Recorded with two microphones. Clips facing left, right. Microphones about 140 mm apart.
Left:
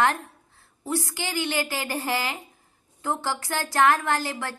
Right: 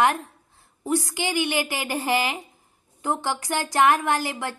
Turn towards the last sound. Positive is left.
turn(degrees=-15)  # may be behind; listen again after turning